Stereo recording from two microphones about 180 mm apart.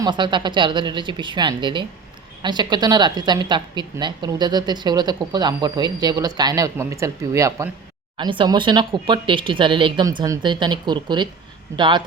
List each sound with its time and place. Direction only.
0.0 s a woman's voice: 25° right (ahead or behind)